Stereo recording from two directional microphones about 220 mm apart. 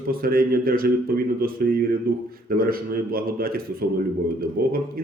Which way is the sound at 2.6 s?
40° right (ahead or behind).